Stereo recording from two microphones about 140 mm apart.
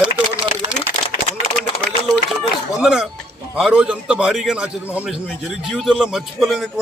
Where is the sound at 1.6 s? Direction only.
85° right.